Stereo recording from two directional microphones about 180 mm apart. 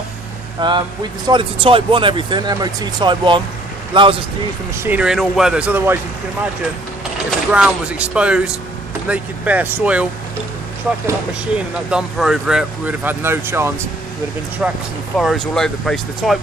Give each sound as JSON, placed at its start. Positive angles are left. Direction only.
{"t": 0.6, "sound": "speech", "side_deg": -25}
{"t": 4.8, "sound": "speech", "side_deg": -5}
{"t": 7.2, "sound": "speech", "side_deg": -5}
{"t": 11.9, "sound": "speech", "side_deg": -5}